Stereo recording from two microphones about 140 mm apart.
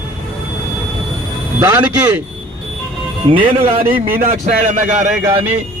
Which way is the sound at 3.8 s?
90° right.